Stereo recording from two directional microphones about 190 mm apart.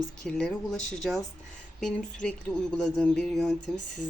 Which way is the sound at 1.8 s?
5° left (ahead or behind).